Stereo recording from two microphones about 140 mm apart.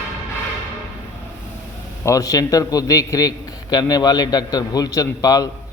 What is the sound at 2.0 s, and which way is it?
A man's voice, 25° left (ahead or behind).